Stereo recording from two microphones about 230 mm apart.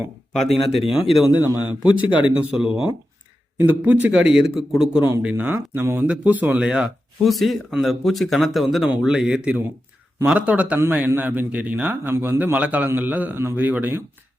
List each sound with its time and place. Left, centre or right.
0.4 s speech: left
0.9 s a man's voice: centre